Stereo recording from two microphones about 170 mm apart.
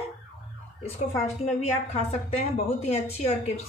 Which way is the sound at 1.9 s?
40° left (ahead or behind).